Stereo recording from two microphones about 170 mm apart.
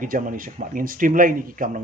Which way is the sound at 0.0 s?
55° right (ahead or behind).